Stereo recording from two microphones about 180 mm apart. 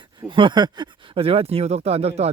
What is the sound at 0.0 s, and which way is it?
Speech, 25° right (ahead or behind).